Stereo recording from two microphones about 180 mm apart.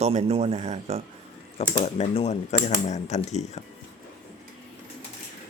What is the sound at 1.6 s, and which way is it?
Speech, 35° left (ahead or behind).